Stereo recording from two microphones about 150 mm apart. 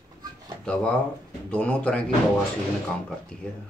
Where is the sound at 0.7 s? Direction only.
5° left (ahead or behind).